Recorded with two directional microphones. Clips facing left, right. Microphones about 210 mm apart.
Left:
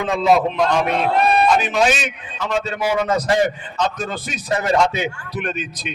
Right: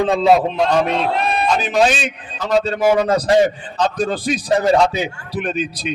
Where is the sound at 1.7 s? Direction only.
40° right (ahead or behind).